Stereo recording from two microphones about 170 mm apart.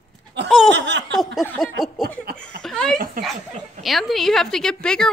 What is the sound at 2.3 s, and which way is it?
Laughter, 65° right (ahead or behind).